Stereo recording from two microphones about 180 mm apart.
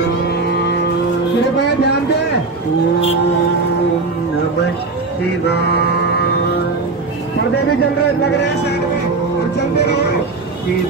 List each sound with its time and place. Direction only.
1.6 s a sound: 65° left (ahead or behind)
5.5 s mantra: 65° left (ahead or behind)
8.0 s speech: 70° left (ahead or behind)